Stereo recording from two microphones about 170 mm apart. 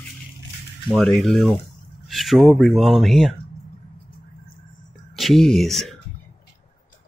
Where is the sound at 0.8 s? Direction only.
Centre (ahead or behind).